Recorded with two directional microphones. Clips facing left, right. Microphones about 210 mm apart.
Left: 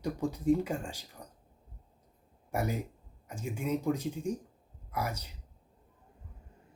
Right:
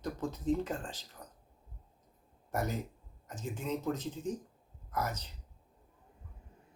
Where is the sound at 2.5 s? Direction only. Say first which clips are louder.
Left 2 dB; 10° left (ahead or behind).